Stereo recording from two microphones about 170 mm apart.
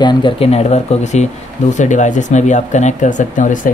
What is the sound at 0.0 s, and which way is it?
Speech, 25° left (ahead or behind).